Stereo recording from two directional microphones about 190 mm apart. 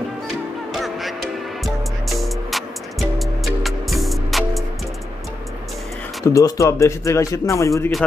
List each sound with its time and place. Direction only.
0.7 s music: centre (ahead or behind)
6.2 s speech: 15° left (ahead or behind)